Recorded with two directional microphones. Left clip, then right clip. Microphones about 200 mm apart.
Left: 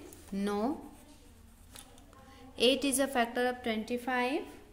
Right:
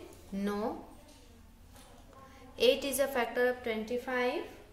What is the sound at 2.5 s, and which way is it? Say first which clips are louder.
A woman's voice: even; 35° left (ahead or behind).